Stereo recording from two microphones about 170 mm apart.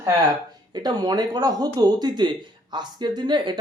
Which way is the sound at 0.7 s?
25° right (ahead or behind).